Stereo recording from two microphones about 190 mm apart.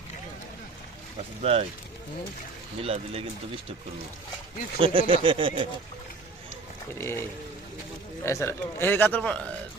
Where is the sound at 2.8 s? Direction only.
30° right (ahead or behind).